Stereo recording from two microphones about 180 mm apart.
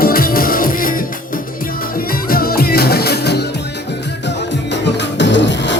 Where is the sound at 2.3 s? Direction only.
55° left (ahead or behind).